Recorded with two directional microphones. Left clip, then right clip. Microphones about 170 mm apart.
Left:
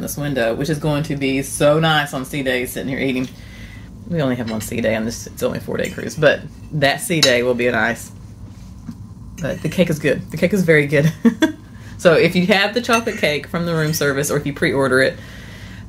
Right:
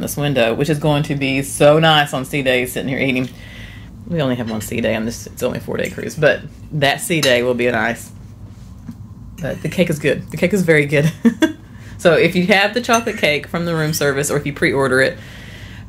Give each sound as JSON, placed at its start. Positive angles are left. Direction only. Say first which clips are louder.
{"t": 0.0, "sound": "speech", "louder": "right 3 dB", "side_deg": -50}
{"t": 4.1, "sound": "speech", "louder": "right 1 dB", "side_deg": -15}
{"t": 9.4, "sound": "speech", "louder": "even", "side_deg": 0}